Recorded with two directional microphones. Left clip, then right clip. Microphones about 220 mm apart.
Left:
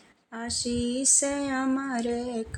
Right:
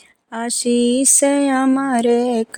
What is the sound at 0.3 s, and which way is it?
Music, 45° right (ahead or behind).